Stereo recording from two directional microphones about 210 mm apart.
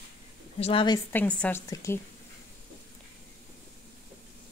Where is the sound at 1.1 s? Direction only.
5° left (ahead or behind).